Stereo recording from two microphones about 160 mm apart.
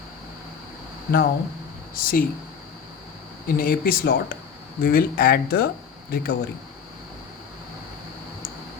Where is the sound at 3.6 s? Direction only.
65° left (ahead or behind).